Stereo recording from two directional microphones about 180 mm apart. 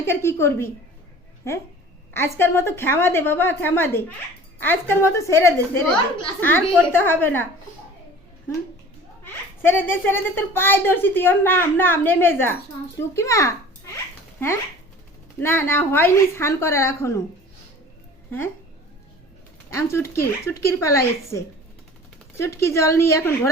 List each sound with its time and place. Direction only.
0.0 s a woman's voice: 15° left (ahead or behind)
2.1 s a woman's voice: 15° left (ahead or behind)
9.2 s a woman's voice: 10° left (ahead or behind)
15.4 s a woman's voice: 10° left (ahead or behind)
18.3 s speech: 10° left (ahead or behind)
19.7 s a woman's voice: 15° left (ahead or behind)